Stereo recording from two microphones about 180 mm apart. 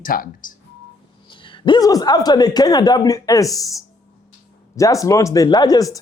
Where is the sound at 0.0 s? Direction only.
50° left (ahead or behind).